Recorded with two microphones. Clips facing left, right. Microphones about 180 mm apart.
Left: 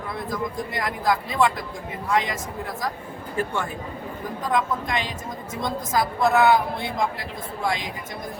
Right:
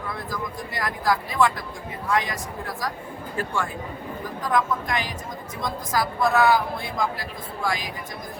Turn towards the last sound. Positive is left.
turn(degrees=25)  # may be behind; listen again after turning